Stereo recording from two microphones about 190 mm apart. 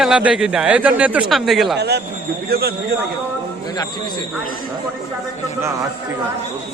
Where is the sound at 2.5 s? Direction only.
55° right (ahead or behind).